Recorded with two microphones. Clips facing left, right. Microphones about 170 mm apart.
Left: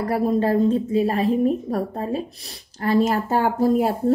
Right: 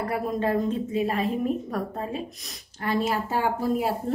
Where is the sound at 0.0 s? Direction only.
35° left (ahead or behind).